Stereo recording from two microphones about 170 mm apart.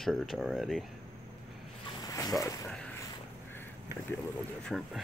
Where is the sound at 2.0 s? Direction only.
20° left (ahead or behind).